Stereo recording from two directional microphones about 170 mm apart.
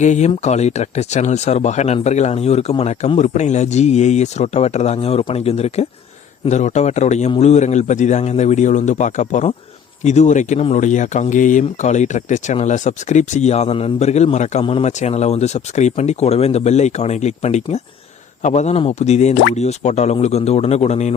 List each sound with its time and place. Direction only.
0.0 s speech: 45° left (ahead or behind)